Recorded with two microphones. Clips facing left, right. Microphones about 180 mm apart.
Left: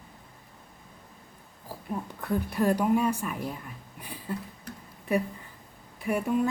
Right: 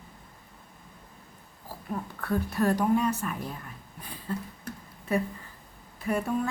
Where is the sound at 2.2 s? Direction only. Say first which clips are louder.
Even; 15° left (ahead or behind).